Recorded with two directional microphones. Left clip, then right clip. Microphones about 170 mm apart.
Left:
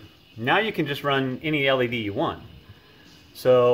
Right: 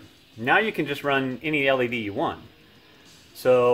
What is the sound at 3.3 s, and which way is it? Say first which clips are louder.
Speech: left 1 dB; centre (ahead or behind).